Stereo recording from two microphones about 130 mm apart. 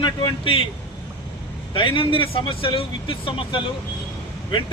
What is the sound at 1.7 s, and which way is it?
Speech, 40° left (ahead or behind).